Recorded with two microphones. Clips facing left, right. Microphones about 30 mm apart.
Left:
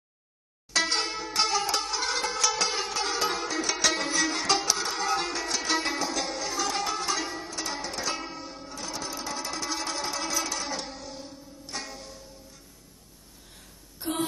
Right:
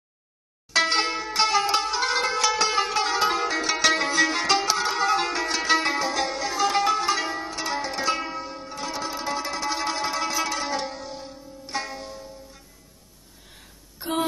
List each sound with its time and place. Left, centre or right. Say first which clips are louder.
0.7 s zither: right 5 dB; right
1.2 s music: right 5 dB; centre
13.9 s a sound: right 4 dB; right